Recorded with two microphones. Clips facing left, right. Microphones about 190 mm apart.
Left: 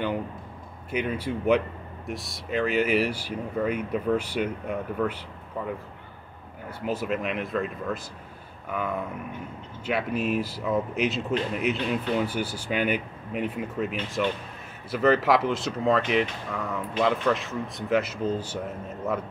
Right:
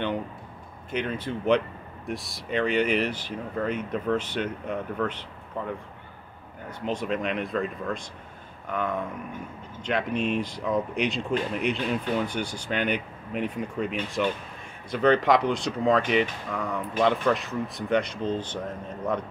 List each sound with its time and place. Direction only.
0.9 s speech: 10° left (ahead or behind)
6.9 s speech: 5° left (ahead or behind)